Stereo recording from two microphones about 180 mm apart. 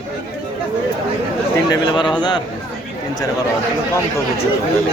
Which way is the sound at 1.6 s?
20° left (ahead or behind).